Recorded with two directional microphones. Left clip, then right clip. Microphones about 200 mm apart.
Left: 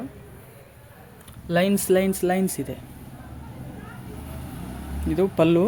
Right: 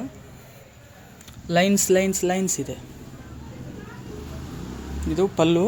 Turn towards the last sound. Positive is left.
turn(degrees=10)  # may be behind; listen again after turning